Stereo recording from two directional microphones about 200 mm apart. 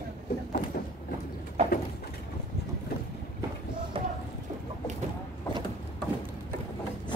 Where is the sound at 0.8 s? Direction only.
45° left (ahead or behind).